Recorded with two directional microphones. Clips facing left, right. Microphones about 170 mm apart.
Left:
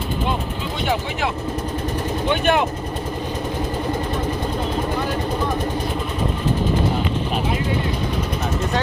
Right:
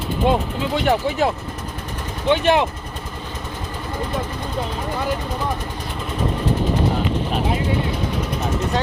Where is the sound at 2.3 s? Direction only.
25° right (ahead or behind).